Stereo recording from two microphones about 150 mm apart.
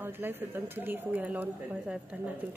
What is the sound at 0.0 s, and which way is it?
Speech, 15° right (ahead or behind).